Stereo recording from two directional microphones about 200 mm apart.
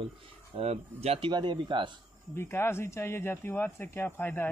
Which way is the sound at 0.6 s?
30° right (ahead or behind).